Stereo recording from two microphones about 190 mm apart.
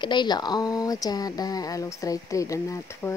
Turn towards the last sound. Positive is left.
turn(degrees=15)  # may be behind; listen again after turning